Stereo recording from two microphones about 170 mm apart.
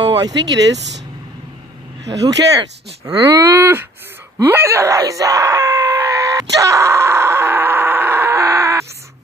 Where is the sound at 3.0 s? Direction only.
20° right (ahead or behind).